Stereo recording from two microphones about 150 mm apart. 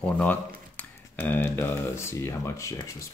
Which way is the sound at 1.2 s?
15° left (ahead or behind).